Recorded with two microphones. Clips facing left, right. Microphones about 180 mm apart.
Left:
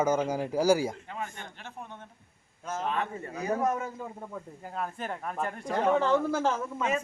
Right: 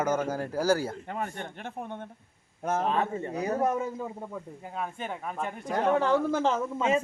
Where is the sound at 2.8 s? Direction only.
30° right (ahead or behind).